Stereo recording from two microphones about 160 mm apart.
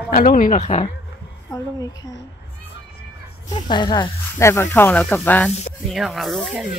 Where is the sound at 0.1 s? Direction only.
60° left (ahead or behind); by 0.8 s 45° left (ahead or behind).